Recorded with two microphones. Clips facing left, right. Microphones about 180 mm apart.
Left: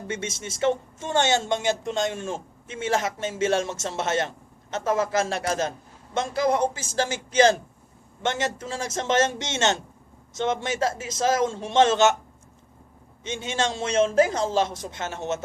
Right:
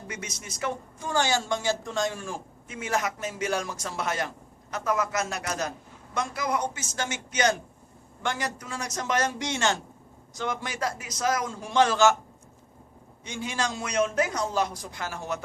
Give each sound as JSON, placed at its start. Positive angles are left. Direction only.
{"t": 0.1, "sound": "speech", "side_deg": 25}
{"t": 13.2, "sound": "speech", "side_deg": 25}